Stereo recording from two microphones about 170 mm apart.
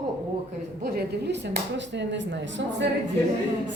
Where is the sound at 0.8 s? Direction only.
65° right (ahead or behind).